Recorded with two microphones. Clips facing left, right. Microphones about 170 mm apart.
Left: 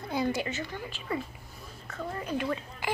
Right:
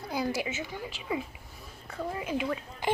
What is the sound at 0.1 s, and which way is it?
A woman's voice, 5° right (ahead or behind).